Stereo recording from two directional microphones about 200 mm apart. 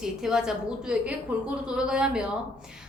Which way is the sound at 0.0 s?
5° right (ahead or behind).